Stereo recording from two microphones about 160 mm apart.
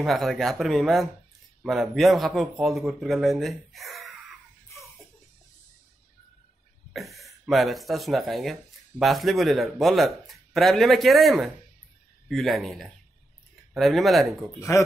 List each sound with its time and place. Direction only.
0.0 s a man's voice: centre (ahead or behind)
6.9 s a man's voice: centre (ahead or behind)
14.7 s speech: 20° left (ahead or behind)